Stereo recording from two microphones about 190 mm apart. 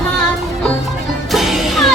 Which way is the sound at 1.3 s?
Centre (ahead or behind).